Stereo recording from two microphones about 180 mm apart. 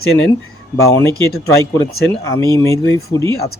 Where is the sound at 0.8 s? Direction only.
15° left (ahead or behind).